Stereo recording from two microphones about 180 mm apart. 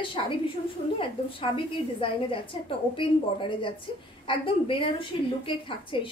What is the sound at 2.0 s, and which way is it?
A woman's voice, 30° left (ahead or behind).